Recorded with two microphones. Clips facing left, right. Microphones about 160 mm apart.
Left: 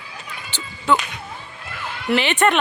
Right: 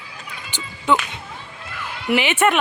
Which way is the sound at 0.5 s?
10° right (ahead or behind).